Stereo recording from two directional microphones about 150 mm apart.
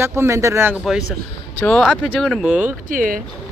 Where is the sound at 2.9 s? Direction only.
65° right (ahead or behind).